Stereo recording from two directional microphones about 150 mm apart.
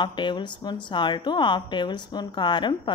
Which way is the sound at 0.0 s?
30° left (ahead or behind).